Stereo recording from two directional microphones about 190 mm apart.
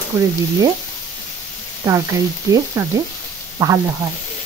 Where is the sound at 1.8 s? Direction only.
20° right (ahead or behind).